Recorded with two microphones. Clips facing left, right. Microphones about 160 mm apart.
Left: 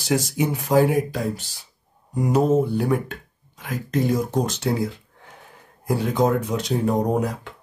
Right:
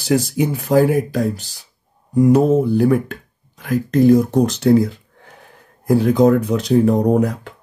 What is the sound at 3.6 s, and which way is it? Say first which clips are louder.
Speech: right 9 dB; 45° right (ahead or behind).